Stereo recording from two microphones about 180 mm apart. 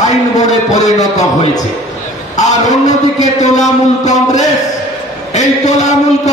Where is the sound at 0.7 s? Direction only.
40° left (ahead or behind).